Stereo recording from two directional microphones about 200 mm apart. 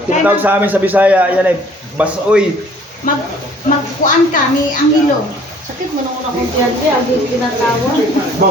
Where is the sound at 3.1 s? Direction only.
45° left (ahead or behind).